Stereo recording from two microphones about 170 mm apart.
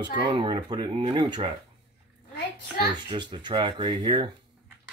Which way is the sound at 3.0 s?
30° right (ahead or behind).